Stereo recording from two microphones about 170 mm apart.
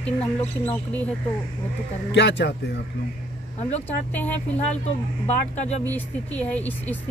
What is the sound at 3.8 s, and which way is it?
Speech, 10° left (ahead or behind).